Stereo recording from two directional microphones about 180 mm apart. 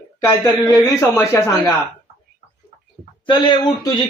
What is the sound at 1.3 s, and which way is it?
Speech, 15° left (ahead or behind).